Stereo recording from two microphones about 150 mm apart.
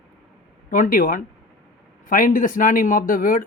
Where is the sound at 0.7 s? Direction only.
65° left (ahead or behind).